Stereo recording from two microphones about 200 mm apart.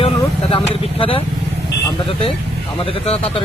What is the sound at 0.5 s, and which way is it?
Speech, 25° left (ahead or behind).